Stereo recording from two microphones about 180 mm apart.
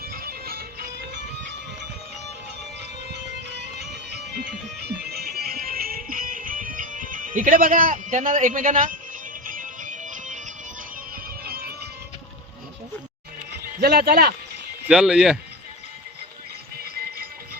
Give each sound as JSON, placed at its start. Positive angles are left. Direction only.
{"t": 0.1, "sound": "music", "side_deg": -55}
{"t": 3.1, "sound": "music", "side_deg": -70}
{"t": 11.1, "sound": "music", "side_deg": -60}
{"t": 13.8, "sound": "speech", "side_deg": -60}
{"t": 14.8, "sound": "speech", "side_deg": -5}